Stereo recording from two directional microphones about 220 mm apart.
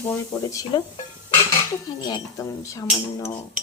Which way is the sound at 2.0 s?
15° left (ahead or behind).